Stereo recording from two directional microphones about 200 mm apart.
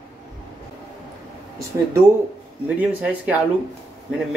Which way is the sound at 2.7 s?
10° right (ahead or behind).